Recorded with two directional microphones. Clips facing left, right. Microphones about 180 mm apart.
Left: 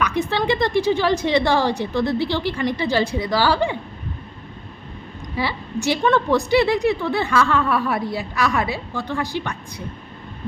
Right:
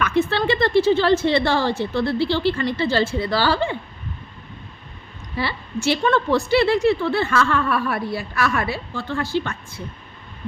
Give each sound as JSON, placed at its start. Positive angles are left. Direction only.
{"t": 0.0, "sound": "a woman's voice", "side_deg": 15}
{"t": 5.4, "sound": "a woman's voice", "side_deg": 15}